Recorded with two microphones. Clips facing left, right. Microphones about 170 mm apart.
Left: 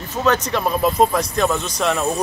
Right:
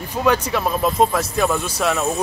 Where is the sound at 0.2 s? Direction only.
10° right (ahead or behind).